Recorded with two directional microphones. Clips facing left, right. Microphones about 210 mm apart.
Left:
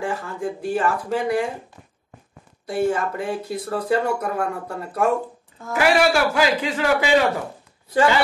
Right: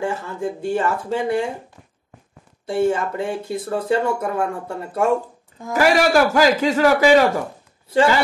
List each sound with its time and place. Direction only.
0.0 s speech: 25° right (ahead or behind)
2.6 s speech: 25° right (ahead or behind)
5.7 s a man's voice: 40° right (ahead or behind)